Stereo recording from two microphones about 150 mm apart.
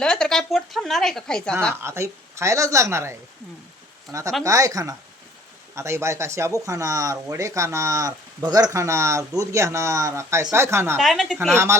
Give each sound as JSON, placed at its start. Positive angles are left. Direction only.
{"t": 0.0, "sound": "a woman's voice", "side_deg": 5}
{"t": 1.8, "sound": "speech", "side_deg": -20}
{"t": 10.9, "sound": "a woman's voice", "side_deg": 0}
{"t": 11.5, "sound": "speech", "side_deg": -20}